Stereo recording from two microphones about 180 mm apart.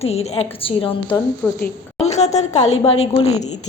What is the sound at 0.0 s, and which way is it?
A woman's voice, 35° left (ahead or behind).